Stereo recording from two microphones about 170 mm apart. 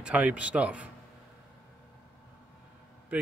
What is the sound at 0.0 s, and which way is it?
Speech, 10° right (ahead or behind).